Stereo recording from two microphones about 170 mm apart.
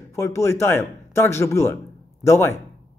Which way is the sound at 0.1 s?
15° left (ahead or behind).